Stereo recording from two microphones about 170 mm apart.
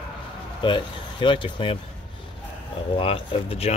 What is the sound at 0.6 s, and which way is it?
Speech, 30° left (ahead or behind).